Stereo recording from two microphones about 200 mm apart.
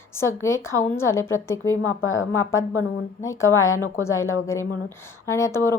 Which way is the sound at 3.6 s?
90° left.